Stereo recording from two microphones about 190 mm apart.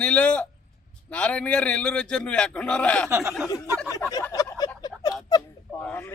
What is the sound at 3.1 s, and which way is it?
Speech, 15° right (ahead or behind).